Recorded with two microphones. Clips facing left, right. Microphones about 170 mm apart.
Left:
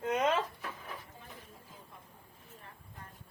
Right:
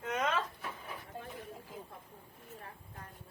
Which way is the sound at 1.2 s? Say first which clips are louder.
Right 9 dB; 70° right (ahead or behind).